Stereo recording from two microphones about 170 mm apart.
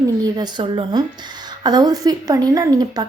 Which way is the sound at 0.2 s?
25° right (ahead or behind).